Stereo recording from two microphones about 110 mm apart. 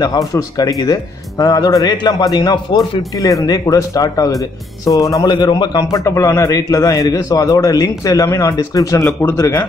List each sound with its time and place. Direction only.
0.3 s a man's voice: 30° left (ahead or behind)
5.9 s a man's voice: 30° left (ahead or behind)